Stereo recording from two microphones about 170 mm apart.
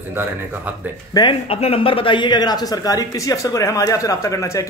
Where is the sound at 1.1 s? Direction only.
30° left (ahead or behind).